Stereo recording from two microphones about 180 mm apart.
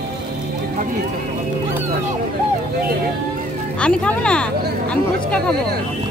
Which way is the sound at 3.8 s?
5° left (ahead or behind).